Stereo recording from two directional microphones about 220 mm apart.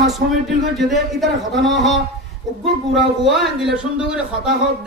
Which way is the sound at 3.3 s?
Centre (ahead or behind).